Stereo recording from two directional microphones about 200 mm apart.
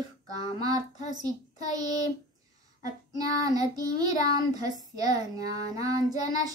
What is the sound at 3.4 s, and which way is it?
Speech, 20° right (ahead or behind).